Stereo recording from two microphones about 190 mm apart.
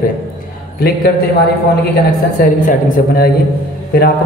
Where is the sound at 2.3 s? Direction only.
45° left (ahead or behind).